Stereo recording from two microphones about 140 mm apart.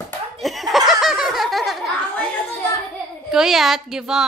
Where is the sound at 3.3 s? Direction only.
Centre (ahead or behind).